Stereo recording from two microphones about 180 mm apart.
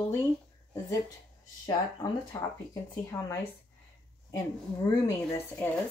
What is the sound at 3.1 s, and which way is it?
Speech, 15° left (ahead or behind).